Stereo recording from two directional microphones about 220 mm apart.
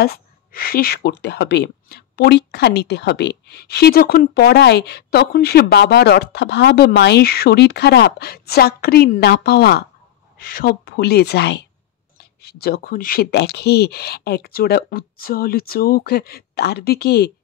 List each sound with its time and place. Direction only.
0.0 s speech: 45° left (ahead or behind)